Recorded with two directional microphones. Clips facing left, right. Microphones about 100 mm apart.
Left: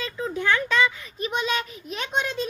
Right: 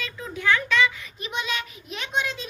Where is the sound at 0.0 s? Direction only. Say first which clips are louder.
Left 2 dB; 35° left (ahead or behind).